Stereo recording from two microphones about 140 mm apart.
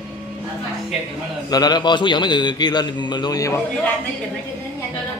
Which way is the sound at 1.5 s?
30° left (ahead or behind).